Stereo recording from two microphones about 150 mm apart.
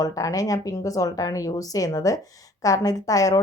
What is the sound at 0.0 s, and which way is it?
A woman's voice, 25° left (ahead or behind).